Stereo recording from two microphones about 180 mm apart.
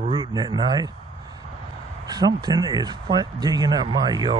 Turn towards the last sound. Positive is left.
turn(degrees=-25)  # may be behind; listen again after turning